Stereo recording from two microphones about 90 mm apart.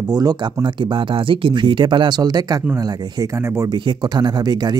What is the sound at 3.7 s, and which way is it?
Speech, 55° right (ahead or behind).